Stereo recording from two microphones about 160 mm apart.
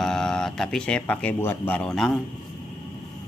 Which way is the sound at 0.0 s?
5° left (ahead or behind).